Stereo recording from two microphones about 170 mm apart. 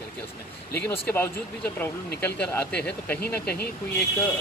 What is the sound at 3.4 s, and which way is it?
Speech, 70° left (ahead or behind).